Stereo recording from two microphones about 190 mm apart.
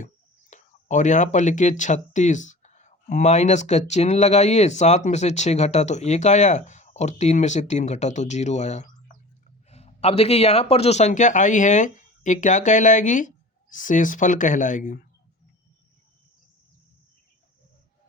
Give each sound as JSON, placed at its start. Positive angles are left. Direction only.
{"t": 0.5, "sound": "speech", "side_deg": 40}